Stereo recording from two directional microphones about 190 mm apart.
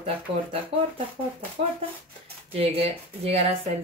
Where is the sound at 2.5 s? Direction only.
30° right (ahead or behind).